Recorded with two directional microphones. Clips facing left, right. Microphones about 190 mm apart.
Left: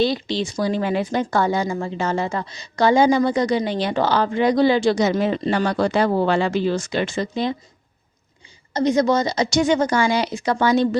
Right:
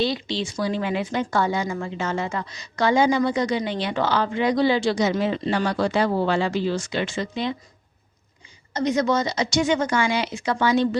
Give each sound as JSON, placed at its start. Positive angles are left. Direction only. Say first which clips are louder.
{"t": 0.0, "sound": "speech", "louder": "left 4 dB", "side_deg": 45}
{"t": 8.7, "sound": "speech", "louder": "left 4 dB", "side_deg": 35}